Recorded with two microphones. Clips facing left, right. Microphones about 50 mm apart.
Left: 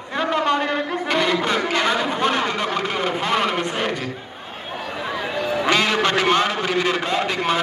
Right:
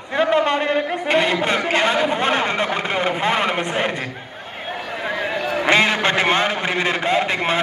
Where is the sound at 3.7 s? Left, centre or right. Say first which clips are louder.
Right 2 dB; centre.